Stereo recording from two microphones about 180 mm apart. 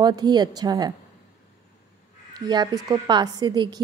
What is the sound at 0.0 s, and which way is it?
Speech, 25° right (ahead or behind).